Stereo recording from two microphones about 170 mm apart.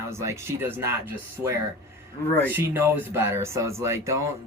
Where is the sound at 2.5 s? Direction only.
10° right (ahead or behind).